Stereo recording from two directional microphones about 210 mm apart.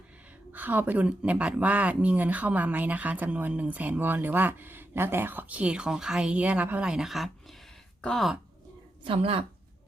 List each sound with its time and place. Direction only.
0.5 s speech: 10° right (ahead or behind)
9.0 s speech: 25° right (ahead or behind)